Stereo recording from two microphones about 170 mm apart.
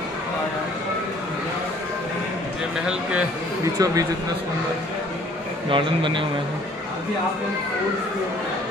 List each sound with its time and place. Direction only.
3.7 s a man's voice: 20° right (ahead or behind)
5.7 s a man's voice: 30° right (ahead or behind)